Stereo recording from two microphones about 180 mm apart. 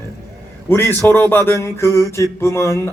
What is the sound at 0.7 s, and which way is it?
Mantra, 15° left (ahead or behind).